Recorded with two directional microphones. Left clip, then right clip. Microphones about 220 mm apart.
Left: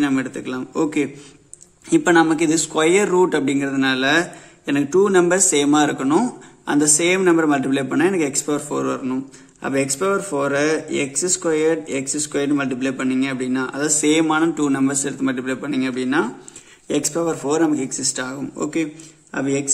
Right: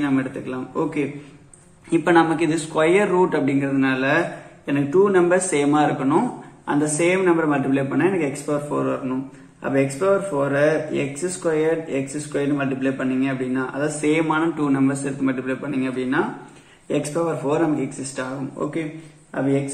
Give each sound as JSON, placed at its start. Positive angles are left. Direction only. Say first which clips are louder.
{"t": 0.0, "sound": "a man's voice", "louder": "left 2 dB", "side_deg": 45}